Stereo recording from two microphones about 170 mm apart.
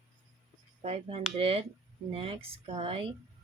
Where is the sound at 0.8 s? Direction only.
35° right (ahead or behind).